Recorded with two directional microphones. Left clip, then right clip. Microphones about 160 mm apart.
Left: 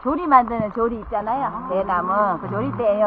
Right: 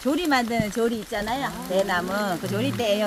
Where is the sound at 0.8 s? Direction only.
20° right (ahead or behind).